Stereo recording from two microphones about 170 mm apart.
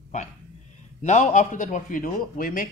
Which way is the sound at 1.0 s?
45° left (ahead or behind).